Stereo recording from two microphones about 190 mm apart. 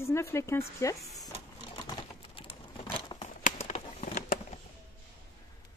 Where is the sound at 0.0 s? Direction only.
15° left (ahead or behind).